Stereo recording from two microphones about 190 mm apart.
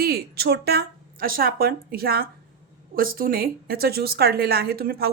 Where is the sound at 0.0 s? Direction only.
55° right (ahead or behind).